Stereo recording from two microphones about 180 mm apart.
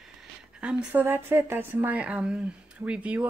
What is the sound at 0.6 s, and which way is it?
A woman's voice, 10° right (ahead or behind).